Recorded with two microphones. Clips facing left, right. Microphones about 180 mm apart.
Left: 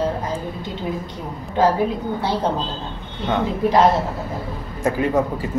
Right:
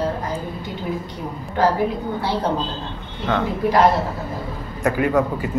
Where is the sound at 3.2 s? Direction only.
25° left (ahead or behind).